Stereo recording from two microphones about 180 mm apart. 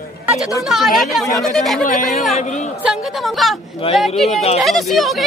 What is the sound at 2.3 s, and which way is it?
Speech, 40° left (ahead or behind).